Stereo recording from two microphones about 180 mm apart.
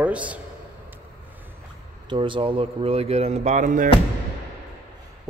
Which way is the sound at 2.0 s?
25° right (ahead or behind).